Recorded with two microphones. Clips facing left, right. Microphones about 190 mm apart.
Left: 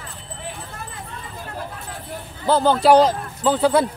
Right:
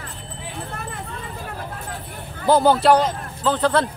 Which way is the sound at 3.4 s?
10° left (ahead or behind).